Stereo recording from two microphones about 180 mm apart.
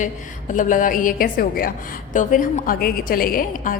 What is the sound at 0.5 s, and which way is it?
A woman's voice, 45° left (ahead or behind).